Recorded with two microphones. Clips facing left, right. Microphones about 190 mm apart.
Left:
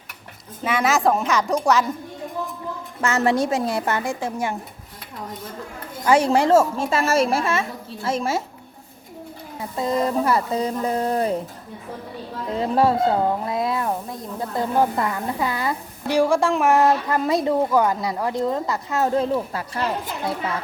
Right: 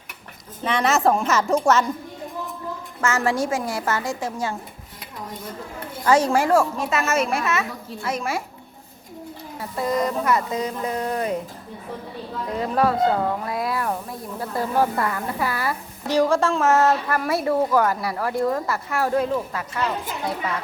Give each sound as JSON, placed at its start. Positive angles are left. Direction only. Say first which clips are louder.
{"t": 0.6, "sound": "a woman's voice", "louder": "even", "side_deg": 5}
{"t": 3.0, "sound": "a woman's voice", "louder": "left 2 dB", "side_deg": 20}
{"t": 6.1, "sound": "a woman's voice", "louder": "left 2 dB", "side_deg": 15}
{"t": 9.6, "sound": "speech", "louder": "left 1 dB", "side_deg": 20}
{"t": 12.5, "sound": "a woman's voice", "louder": "left 2 dB", "side_deg": 30}